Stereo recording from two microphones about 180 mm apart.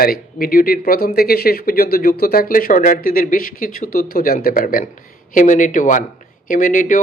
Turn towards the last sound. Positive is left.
turn(degrees=50)  # may be behind; listen again after turning